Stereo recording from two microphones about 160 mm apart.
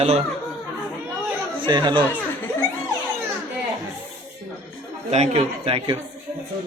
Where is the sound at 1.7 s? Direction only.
25° right (ahead or behind).